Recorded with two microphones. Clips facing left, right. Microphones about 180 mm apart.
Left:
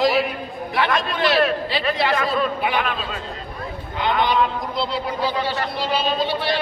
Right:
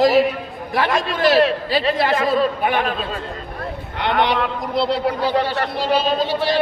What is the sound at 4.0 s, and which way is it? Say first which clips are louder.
A man's voice: right 1 dB; 70° right (ahead or behind).